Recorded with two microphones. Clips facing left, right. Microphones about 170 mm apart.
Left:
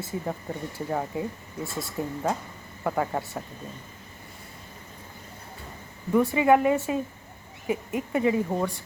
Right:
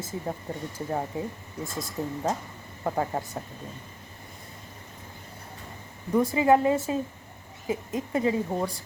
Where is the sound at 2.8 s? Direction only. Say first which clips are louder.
Left 1 dB; 20° right (ahead or behind).